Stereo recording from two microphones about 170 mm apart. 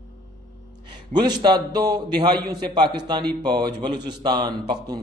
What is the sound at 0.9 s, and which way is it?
A man's voice, 25° right (ahead or behind).